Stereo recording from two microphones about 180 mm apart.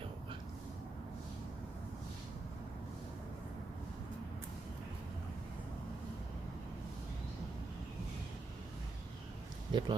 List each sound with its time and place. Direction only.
9.7 s speech: 25° right (ahead or behind)